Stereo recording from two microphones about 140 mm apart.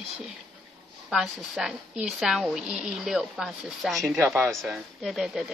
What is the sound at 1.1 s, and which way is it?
A woman's voice, 5° right (ahead or behind).